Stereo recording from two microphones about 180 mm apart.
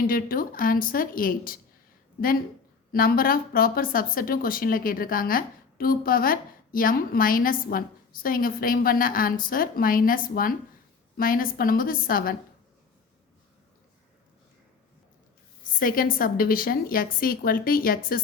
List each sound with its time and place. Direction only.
0.0 s speech: 55° left (ahead or behind)
2.9 s speech: 55° left (ahead or behind)
15.7 s speech: 50° left (ahead or behind)